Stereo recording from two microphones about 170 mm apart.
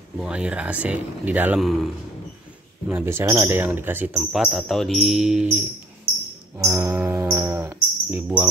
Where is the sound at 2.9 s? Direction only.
15° right (ahead or behind).